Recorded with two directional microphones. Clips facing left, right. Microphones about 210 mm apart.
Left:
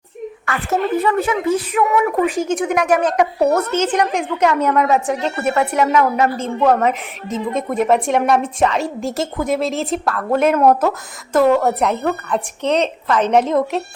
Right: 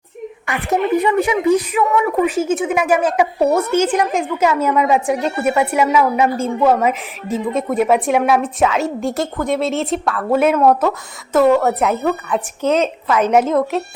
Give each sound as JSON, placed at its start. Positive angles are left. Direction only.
{"t": 0.4, "sound": "a woman's voice", "side_deg": -15}